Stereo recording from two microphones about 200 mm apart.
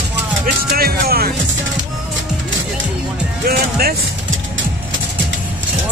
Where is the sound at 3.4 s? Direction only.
50° right (ahead or behind).